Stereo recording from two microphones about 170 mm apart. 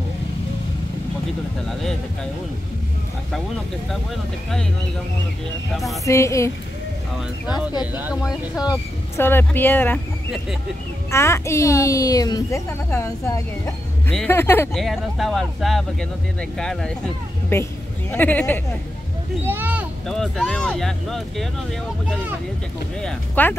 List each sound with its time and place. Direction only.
1.7 s speech: centre (ahead or behind)
4.1 s speech: centre (ahead or behind)
6.0 s a woman's voice: 15° left (ahead or behind)
7.8 s speech: 10° right (ahead or behind)
8.2 s a woman's voice: 20° left (ahead or behind)
11.1 s a woman's voice: 15° left (ahead or behind)
14.7 s a woman's voice: centre (ahead or behind)
19.4 s a sound: 10° right (ahead or behind)
20.1 s speech: centre (ahead or behind)
22.9 s a woman's voice: 10° left (ahead or behind)